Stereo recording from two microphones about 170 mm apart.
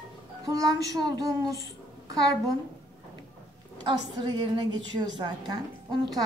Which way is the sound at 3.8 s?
25° right (ahead or behind).